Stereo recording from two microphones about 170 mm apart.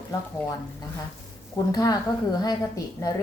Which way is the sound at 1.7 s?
20° left (ahead or behind).